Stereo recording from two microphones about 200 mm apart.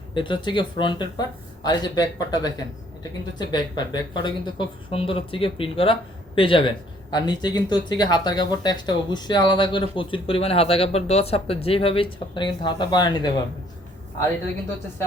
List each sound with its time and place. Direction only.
0.1 s speech: 25° left (ahead or behind)